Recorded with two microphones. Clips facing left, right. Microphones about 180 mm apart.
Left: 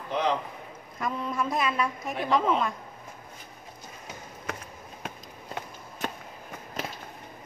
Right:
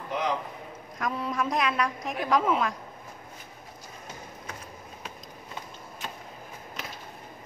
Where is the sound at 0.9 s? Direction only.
Centre (ahead or behind).